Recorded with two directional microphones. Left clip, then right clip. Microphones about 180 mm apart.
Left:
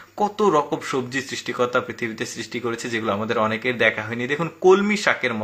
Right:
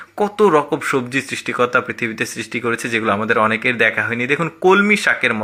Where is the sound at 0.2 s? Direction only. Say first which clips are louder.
Right 5 dB; 20° right (ahead or behind).